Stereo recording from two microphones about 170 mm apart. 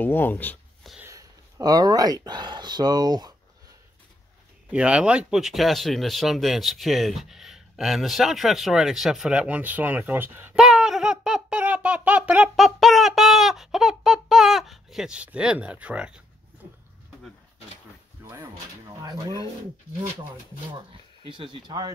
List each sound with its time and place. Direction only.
0.0 s speech: 10° left (ahead or behind)
0.9 s speech: 15° right (ahead or behind)
4.6 s speech: 5° right (ahead or behind)
19.0 s speech: 20° right (ahead or behind)
21.3 s speech: 30° right (ahead or behind)